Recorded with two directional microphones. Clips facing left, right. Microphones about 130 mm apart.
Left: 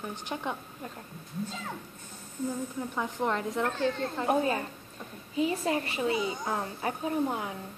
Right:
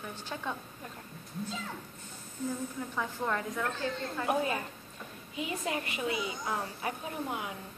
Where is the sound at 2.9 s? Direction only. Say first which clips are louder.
Left 3 dB; 20° left (ahead or behind).